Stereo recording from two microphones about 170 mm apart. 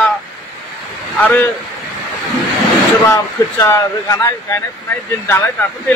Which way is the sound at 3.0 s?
20° left (ahead or behind).